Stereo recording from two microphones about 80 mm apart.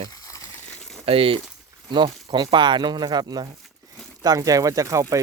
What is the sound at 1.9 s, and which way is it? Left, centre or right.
Speech, right.